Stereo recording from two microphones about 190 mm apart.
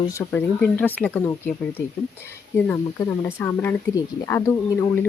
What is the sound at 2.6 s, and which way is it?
Speech, 10° left (ahead or behind).